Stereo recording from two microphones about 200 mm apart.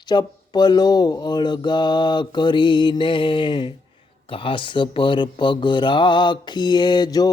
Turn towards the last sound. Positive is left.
turn(degrees=20)  # may be behind; listen again after turning